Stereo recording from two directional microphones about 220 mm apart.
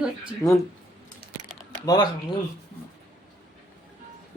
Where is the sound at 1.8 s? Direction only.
15° left (ahead or behind).